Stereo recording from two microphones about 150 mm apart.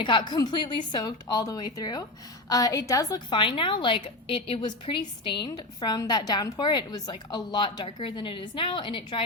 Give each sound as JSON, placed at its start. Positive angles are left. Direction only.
{"t": 0.0, "sound": "a woman's voice", "side_deg": 30}